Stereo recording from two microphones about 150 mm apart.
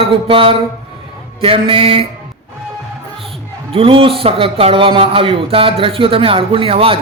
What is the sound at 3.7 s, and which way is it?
A man's voice, 40° right (ahead or behind).